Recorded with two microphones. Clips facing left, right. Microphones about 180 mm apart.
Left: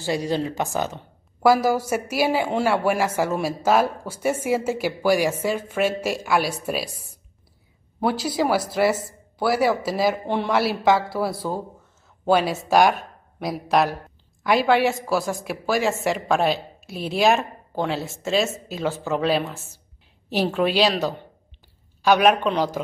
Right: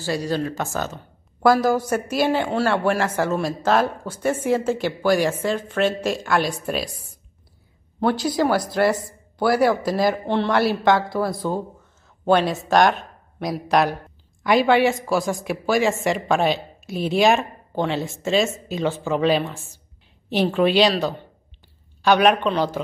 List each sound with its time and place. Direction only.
0.0 s a woman's voice: 20° left (ahead or behind); by 20.9 s 5° left (ahead or behind)
22.0 s a woman's voice: 5° left (ahead or behind)